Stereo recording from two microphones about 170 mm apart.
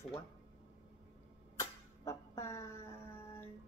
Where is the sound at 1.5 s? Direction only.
15° left (ahead or behind).